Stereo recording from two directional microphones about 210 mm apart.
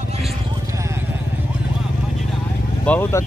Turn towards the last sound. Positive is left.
turn(degrees=10)  # may be behind; listen again after turning